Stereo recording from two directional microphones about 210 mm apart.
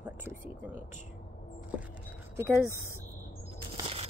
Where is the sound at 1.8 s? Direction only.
10° right (ahead or behind).